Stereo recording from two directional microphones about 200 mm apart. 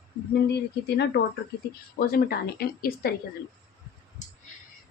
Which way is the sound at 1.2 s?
55° left (ahead or behind).